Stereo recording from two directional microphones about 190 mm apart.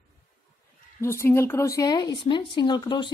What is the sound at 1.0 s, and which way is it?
Speech, 15° left (ahead or behind).